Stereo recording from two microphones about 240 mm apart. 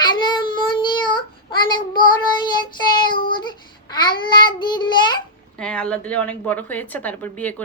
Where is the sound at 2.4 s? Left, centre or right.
Centre.